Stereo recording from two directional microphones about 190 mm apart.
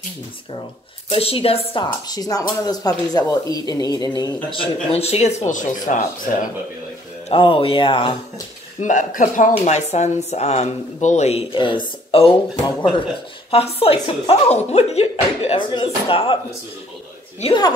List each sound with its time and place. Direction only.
1.1 s speech: 30° left (ahead or behind)
7.2 s speech: 25° left (ahead or behind)
8.8 s speech: 40° left (ahead or behind)
13.5 s speech: 30° left (ahead or behind)
17.4 s speech: 25° left (ahead or behind)